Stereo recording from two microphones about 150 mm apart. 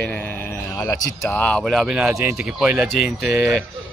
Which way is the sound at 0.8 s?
25° left (ahead or behind).